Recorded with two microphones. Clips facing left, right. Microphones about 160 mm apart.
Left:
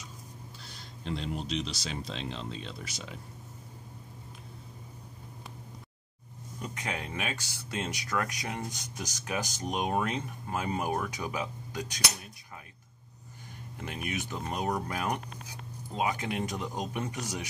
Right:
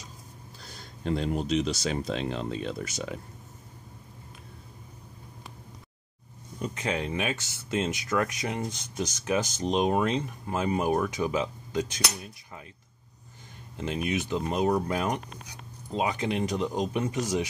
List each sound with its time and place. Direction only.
0.7 s speech: 45° right (ahead or behind)
6.6 s speech: 25° right (ahead or behind)
13.7 s speech: 20° right (ahead or behind)